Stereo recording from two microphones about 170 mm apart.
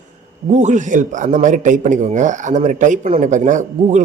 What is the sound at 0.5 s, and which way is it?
A man's voice, 45° right (ahead or behind).